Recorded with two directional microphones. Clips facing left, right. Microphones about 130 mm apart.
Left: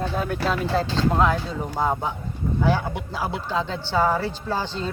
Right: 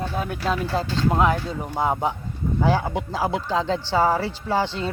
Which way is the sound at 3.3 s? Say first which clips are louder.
Right 2 dB; 90° right.